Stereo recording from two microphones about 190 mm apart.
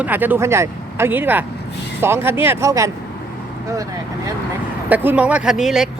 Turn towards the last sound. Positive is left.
turn(degrees=0)  # may be behind; listen again after turning